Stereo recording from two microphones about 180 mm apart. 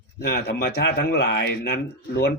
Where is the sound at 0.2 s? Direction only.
60° left (ahead or behind).